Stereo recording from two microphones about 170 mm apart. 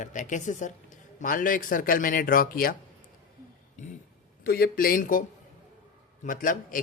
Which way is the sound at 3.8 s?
45° left (ahead or behind).